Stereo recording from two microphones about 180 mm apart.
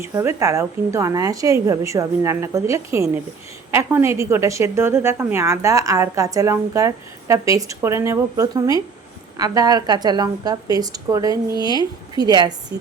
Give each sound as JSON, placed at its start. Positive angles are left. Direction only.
{"t": 0.0, "sound": "a woman's voice", "side_deg": -15}